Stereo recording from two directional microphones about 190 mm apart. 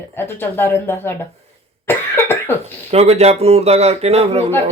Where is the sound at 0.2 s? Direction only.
10° left (ahead or behind).